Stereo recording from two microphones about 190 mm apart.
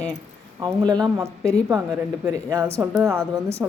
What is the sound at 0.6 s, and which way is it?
Speech, 20° right (ahead or behind).